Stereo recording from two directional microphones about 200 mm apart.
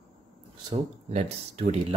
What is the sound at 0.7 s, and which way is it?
Speech, 35° right (ahead or behind).